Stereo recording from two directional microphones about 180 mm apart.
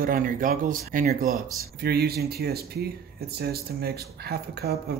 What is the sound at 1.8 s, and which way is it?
Speech, 60° right (ahead or behind).